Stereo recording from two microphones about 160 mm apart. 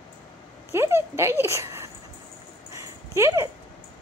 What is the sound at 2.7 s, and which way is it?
Dog, 20° right (ahead or behind).